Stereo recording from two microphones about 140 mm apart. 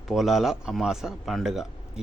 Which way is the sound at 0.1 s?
Centre (ahead or behind).